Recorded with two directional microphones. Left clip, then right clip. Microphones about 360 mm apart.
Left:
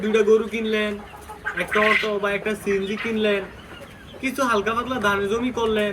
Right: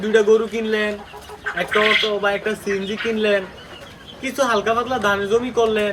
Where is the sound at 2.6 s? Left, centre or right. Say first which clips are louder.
Right 1 dB; right.